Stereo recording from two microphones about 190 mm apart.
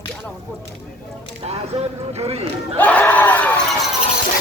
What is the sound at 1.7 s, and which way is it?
Speech, 30° right (ahead or behind).